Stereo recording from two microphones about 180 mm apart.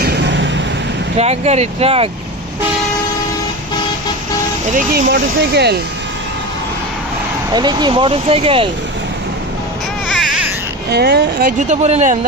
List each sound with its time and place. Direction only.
0.0 s vehicle: 70° right (ahead or behind)
1.2 s speech: 35° right (ahead or behind)
4.7 s speech: 65° right (ahead or behind)
7.5 s speech: 25° right (ahead or behind)
10.1 s baby cry: centre (ahead or behind)
10.8 s speech: 65° right (ahead or behind)
11.7 s speech: 40° right (ahead or behind)